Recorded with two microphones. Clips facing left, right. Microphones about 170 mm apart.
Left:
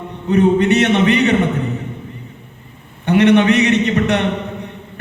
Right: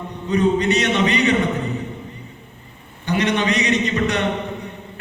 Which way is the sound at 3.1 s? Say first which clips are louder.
Left 8 dB; 60° left (ahead or behind).